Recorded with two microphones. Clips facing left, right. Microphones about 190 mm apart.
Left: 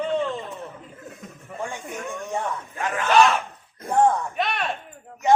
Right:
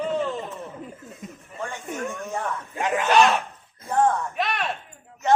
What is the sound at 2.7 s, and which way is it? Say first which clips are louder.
Speech: right 4 dB; 20° right (ahead or behind).